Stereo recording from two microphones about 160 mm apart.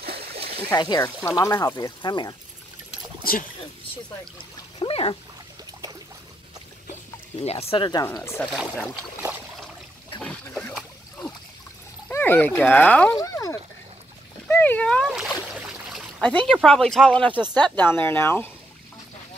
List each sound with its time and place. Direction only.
0.0 s splash: 80° right
0.7 s speech: 20° left (ahead or behind)
3.3 s rowboat: 65° left (ahead or behind)
4.7 s a sound: 35° left (ahead or behind)
6.9 s a sound: 40° left (ahead or behind)
8.2 s speech: 10° left (ahead or behind)
10.2 s boat: 5° left (ahead or behind)
12.1 s speech: 10° left (ahead or behind)
13.2 s a sound: 20° left (ahead or behind)
14.5 s splash: 10° left (ahead or behind)
16.2 s speech: 10° left (ahead or behind)